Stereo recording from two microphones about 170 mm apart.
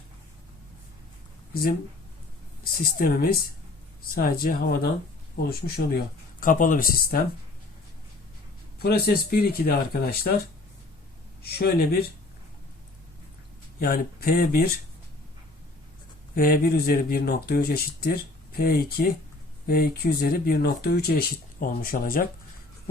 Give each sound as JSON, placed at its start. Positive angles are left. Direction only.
{"t": 2.6, "sound": "speech", "side_deg": 60}
{"t": 6.4, "sound": "speech", "side_deg": 50}
{"t": 8.8, "sound": "speech", "side_deg": 65}
{"t": 13.7, "sound": "speech", "side_deg": 60}
{"t": 16.3, "sound": "speech", "side_deg": 60}